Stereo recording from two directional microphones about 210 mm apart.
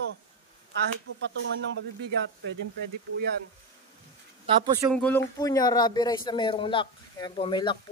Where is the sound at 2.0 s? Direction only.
55° right (ahead or behind).